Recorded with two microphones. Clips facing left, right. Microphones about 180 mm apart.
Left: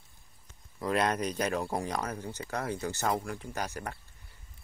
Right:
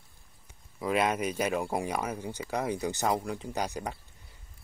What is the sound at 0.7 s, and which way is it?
Speech, 5° right (ahead or behind).